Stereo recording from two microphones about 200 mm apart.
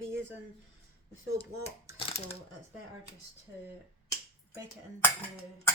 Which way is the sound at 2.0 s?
30° left (ahead or behind).